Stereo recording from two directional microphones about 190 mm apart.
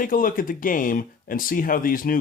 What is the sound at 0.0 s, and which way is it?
Speech, 45° left (ahead or behind).